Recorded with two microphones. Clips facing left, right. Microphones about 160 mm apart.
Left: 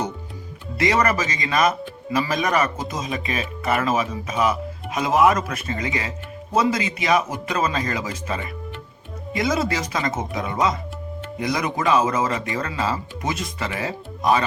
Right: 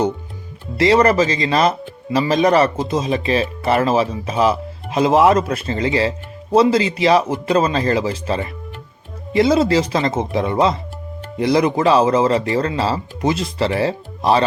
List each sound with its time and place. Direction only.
0.8 s speech: 30° right (ahead or behind)